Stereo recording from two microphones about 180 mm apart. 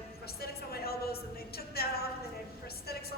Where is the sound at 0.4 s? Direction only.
60° left (ahead or behind).